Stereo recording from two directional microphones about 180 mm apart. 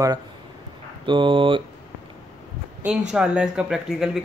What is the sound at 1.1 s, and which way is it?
Speech, 25° right (ahead or behind).